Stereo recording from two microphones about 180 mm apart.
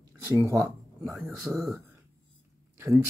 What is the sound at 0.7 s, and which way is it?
Speech, centre (ahead or behind).